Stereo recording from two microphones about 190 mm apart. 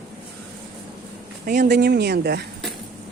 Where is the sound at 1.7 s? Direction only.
60° right (ahead or behind).